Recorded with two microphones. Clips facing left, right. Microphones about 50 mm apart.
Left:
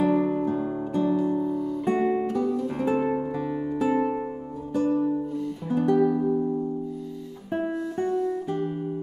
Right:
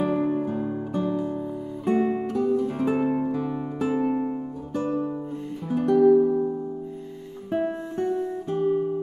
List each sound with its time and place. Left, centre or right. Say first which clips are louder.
0.0 s music: left 1 dB; centre
7.6 s music: right 1 dB; centre
8.5 s music: right 5 dB; centre